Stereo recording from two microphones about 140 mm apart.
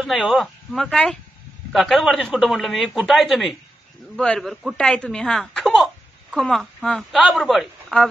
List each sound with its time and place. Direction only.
0.0 s speech: centre (ahead or behind)